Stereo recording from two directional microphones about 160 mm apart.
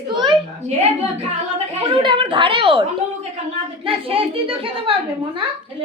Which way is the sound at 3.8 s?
35° right (ahead or behind).